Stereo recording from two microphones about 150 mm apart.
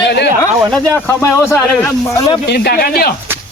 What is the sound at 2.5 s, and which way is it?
Speech, 90° left.